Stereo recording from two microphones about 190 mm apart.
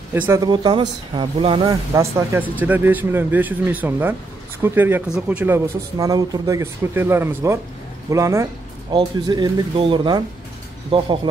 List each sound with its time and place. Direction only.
0.1 s speech: 15° right (ahead or behind)